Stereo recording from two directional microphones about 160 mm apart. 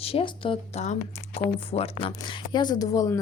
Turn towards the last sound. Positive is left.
turn(degrees=20)  # may be behind; listen again after turning